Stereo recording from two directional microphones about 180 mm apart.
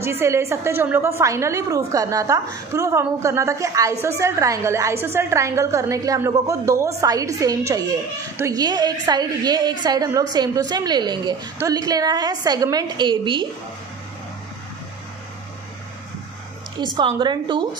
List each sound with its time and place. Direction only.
0.0 s a woman's voice: 15° right (ahead or behind)
16.8 s a woman's voice: 25° right (ahead or behind)